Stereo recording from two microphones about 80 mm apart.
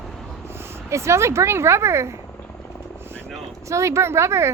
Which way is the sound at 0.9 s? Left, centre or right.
Right.